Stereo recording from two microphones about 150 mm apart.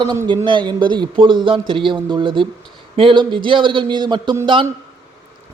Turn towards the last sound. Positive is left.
turn(degrees=-35)  # may be behind; listen again after turning